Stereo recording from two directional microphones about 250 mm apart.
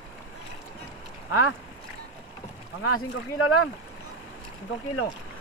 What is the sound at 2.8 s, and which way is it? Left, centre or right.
Speech, left.